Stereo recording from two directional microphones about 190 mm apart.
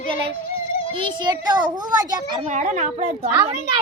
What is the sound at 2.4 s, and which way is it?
Speech, 40° right (ahead or behind).